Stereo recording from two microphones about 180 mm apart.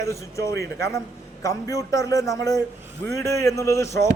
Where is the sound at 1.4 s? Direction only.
15° left (ahead or behind).